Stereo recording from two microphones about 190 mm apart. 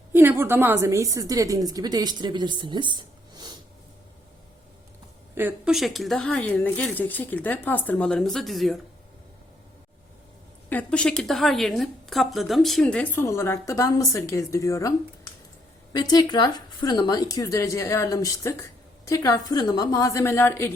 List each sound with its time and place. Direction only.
0.1 s a woman's voice: 10° right (ahead or behind)
5.3 s speech: 10° right (ahead or behind)
10.7 s speech: 5° left (ahead or behind)